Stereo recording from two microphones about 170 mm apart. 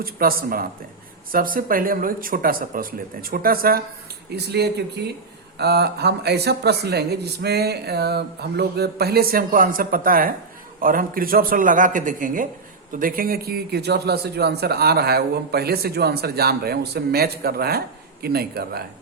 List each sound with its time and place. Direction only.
0.0 s speech: 60° right (ahead or behind)
4.3 s a man's voice: 75° right (ahead or behind)